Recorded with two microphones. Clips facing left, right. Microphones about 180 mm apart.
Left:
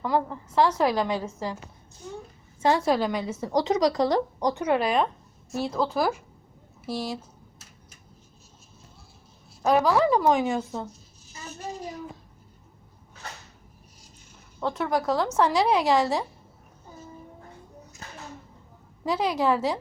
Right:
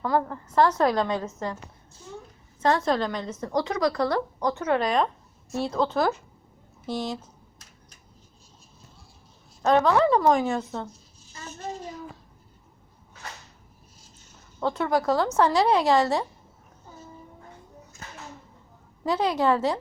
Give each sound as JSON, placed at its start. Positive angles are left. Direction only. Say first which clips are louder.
{"t": 0.0, "sound": "a woman's voice", "louder": "right 1 dB", "side_deg": 5}
{"t": 2.6, "sound": "a woman's voice", "louder": "left 1 dB", "side_deg": 5}
{"t": 3.6, "sound": "a woman's voice", "louder": "left 2 dB", "side_deg": 20}
{"t": 9.6, "sound": "a woman's voice", "louder": "right 1 dB", "side_deg": 5}
{"t": 14.6, "sound": "a woman's voice", "louder": "right 2 dB", "side_deg": 0}
{"t": 19.0, "sound": "a woman's voice", "louder": "right 1 dB", "side_deg": 0}